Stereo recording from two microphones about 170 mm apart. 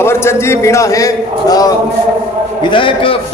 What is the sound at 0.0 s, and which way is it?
A man's voice, 15° left (ahead or behind).